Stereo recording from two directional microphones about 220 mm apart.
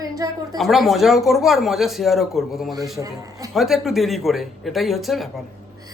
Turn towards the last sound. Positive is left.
turn(degrees=0)  # may be behind; listen again after turning